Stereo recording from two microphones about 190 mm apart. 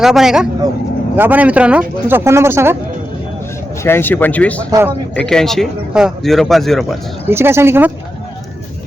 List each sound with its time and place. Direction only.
0.0 s speech: centre (ahead or behind)
3.8 s speech: 10° left (ahead or behind)
7.3 s speech: 10° right (ahead or behind)